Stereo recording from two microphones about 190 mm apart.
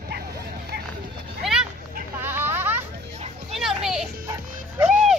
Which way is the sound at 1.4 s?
5° right (ahead or behind).